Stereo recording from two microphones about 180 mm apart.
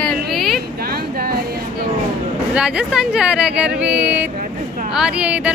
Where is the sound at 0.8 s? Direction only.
55° right (ahead or behind).